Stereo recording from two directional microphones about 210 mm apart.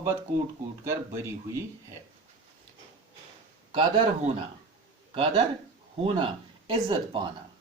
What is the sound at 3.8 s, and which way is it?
Speech, 30° right (ahead or behind).